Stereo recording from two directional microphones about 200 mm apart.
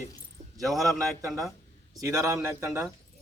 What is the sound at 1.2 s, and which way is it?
A man's voice, 15° right (ahead or behind).